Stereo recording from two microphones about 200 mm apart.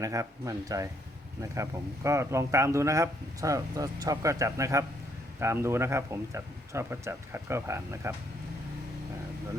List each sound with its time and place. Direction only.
0.0 s speech: 15° right (ahead or behind)
2.0 s speech: 15° right (ahead or behind)